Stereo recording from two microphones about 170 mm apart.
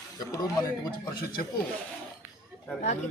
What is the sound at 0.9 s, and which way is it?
Speech, 60° left (ahead or behind).